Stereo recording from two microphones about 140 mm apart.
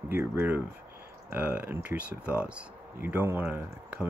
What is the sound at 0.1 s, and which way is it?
Speech, 15° right (ahead or behind).